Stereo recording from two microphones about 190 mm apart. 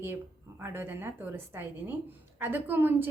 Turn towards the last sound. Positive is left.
turn(degrees=-10)  # may be behind; listen again after turning